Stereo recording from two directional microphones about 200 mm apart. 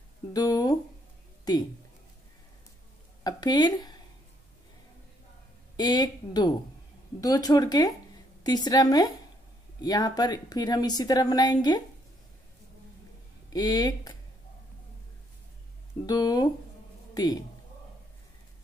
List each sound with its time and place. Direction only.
0.3 s a woman's voice: 20° left (ahead or behind)
3.3 s a woman's voice: 20° left (ahead or behind)
5.8 s a woman's voice: 20° left (ahead or behind)
13.5 s a woman's voice: 20° left (ahead or behind)
16.1 s a woman's voice: 20° left (ahead or behind)